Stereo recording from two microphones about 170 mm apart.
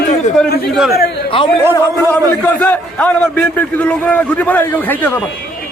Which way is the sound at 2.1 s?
10° left (ahead or behind).